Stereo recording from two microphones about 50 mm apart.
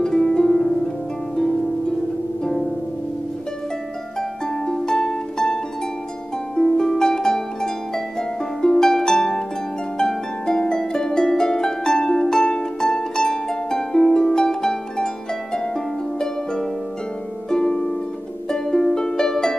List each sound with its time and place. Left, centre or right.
0.0 s harp: centre
4.2 s music: centre
6.5 s harp: centre